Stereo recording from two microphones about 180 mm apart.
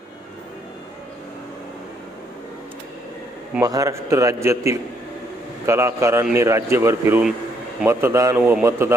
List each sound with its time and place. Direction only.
3.6 s a man's voice: 20° right (ahead or behind)